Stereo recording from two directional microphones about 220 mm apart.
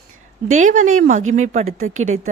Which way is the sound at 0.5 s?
35° right (ahead or behind).